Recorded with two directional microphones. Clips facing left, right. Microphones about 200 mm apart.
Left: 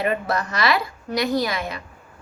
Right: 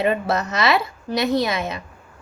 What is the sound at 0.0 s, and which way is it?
A woman's voice, 25° right (ahead or behind).